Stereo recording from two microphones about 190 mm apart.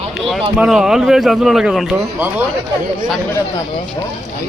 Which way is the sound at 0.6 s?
Centre (ahead or behind).